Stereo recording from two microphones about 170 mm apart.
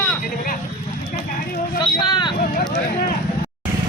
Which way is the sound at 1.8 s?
25° left (ahead or behind).